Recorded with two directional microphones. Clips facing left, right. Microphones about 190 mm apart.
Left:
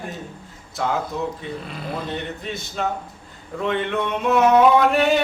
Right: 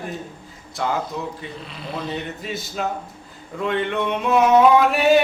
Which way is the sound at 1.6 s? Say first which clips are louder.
Left 3 dB; 50° left (ahead or behind).